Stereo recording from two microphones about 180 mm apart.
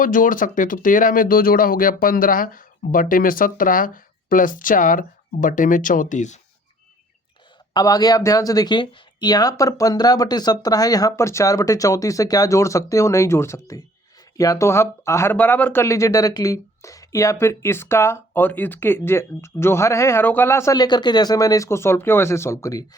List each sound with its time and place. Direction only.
0.0 s speech: 50° left (ahead or behind)
7.7 s speech: 20° left (ahead or behind)